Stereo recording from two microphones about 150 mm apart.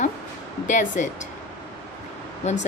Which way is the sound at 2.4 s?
50° left (ahead or behind).